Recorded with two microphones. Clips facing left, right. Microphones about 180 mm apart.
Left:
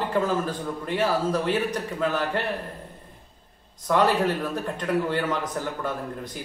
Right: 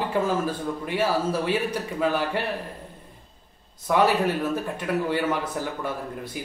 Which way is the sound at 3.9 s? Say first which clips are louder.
Even; 10° right (ahead or behind).